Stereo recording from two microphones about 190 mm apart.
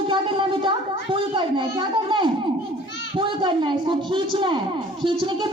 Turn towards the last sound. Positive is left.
turn(degrees=-25)  # may be behind; listen again after turning